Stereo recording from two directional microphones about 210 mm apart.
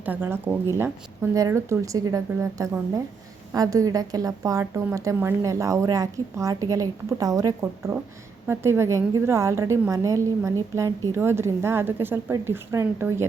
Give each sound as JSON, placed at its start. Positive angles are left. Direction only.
{"t": 0.0, "sound": "a woman's voice", "side_deg": -10}